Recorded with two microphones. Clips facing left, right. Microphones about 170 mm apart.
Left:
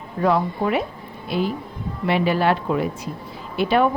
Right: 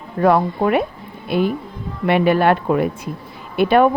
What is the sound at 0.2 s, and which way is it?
Speech, 55° right (ahead or behind).